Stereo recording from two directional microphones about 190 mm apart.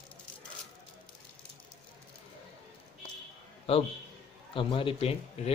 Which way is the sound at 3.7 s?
30° left (ahead or behind).